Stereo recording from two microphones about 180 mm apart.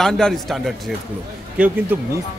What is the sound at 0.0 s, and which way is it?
A man's voice, centre (ahead or behind).